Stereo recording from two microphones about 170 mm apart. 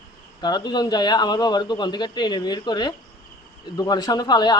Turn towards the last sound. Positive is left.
turn(degrees=25)  # may be behind; listen again after turning